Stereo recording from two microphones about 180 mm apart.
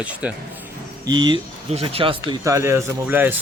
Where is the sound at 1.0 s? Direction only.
25° right (ahead or behind).